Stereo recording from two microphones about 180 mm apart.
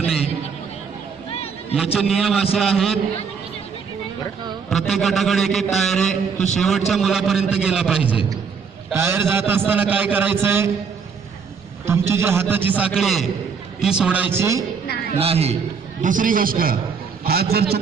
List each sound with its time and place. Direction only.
0.0 s chatter: centre (ahead or behind)
1.7 s a man's voice: 5° right (ahead or behind)
4.7 s a man's voice: centre (ahead or behind)
11.9 s a man's voice: 15° right (ahead or behind)
15.2 s a man's voice: 35° right (ahead or behind)
16.0 s a man's voice: 45° right (ahead or behind)